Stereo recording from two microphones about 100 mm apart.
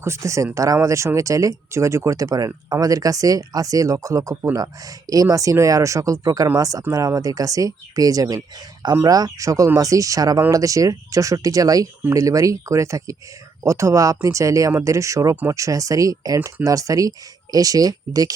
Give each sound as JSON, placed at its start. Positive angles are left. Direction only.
{"t": 0.0, "sound": "speech", "side_deg": -30}